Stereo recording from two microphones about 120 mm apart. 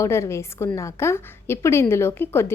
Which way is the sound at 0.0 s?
25° left (ahead or behind).